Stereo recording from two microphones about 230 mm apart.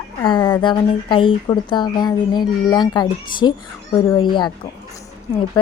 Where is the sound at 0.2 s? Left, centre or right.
Centre.